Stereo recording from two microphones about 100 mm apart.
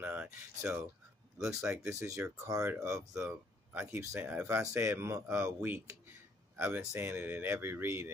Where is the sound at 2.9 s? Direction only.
10° right (ahead or behind).